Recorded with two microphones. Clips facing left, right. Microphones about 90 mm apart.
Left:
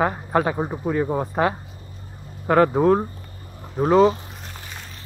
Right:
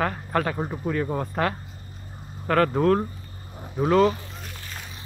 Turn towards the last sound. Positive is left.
turn(degrees=20)  # may be behind; listen again after turning